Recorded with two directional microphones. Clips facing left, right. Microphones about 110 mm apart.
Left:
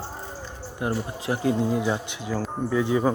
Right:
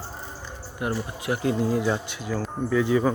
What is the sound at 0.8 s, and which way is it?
Speech, 30° left (ahead or behind).